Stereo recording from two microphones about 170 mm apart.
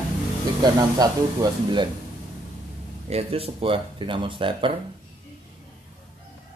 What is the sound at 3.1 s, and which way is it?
Speech, 35° right (ahead or behind).